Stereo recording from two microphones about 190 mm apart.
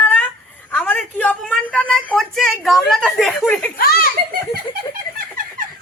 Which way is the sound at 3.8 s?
50° left (ahead or behind).